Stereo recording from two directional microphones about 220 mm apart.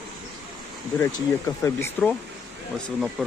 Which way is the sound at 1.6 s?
10° left (ahead or behind).